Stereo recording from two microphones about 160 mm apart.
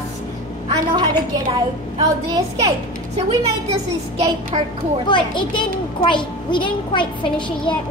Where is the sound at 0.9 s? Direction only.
30° right (ahead or behind).